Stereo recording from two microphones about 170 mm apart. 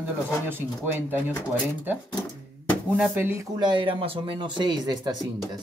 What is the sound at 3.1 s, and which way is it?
Speech, 15° right (ahead or behind).